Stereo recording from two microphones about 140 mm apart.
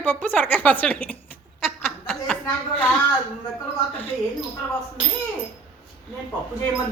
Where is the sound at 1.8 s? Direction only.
5° left (ahead or behind).